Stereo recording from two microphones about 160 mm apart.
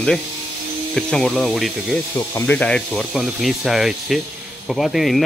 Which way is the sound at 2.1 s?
15° left (ahead or behind).